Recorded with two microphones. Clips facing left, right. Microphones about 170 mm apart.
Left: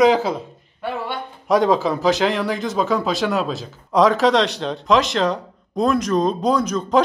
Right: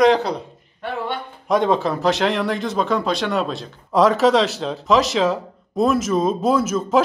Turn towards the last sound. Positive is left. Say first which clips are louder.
# right 1 dB
turn(degrees=-5)  # may be behind; listen again after turning